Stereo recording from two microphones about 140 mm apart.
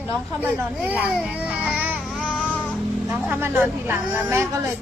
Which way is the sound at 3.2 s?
15° right (ahead or behind).